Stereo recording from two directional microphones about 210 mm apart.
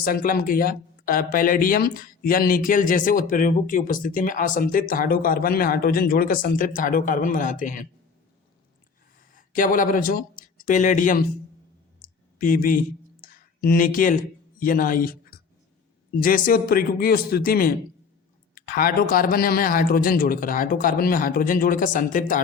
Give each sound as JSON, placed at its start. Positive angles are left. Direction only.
{"t": 0.0, "sound": "speech", "side_deg": 45}
{"t": 9.3, "sound": "speech", "side_deg": 40}
{"t": 11.9, "sound": "clicking", "side_deg": 40}
{"t": 13.2, "sound": "speech", "side_deg": 45}